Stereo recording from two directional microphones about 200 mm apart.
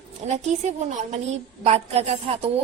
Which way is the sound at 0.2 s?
35° right (ahead or behind).